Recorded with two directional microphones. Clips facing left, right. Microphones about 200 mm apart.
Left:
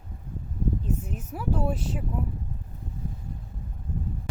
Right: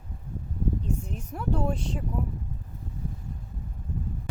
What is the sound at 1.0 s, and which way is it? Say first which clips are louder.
A woman's voice: left 1 dB; 5° left (ahead or behind).